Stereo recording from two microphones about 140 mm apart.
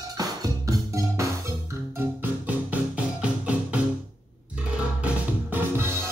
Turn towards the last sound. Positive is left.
turn(degrees=-15)  # may be behind; listen again after turning